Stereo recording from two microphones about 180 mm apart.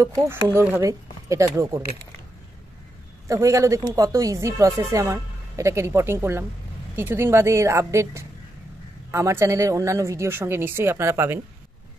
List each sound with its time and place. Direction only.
0.0 s speech: 15° right (ahead or behind)
3.3 s speech: 15° right (ahead or behind)